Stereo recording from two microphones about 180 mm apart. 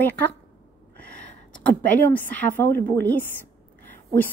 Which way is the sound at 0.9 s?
10° left (ahead or behind).